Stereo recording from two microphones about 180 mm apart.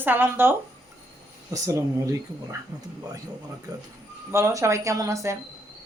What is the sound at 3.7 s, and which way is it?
A woman's voice, 20° right (ahead or behind).